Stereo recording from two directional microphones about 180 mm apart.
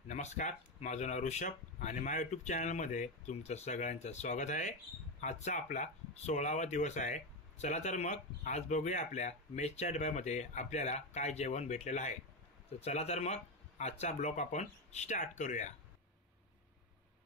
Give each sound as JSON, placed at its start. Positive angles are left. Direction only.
{"t": 0.1, "sound": "speech", "side_deg": 40}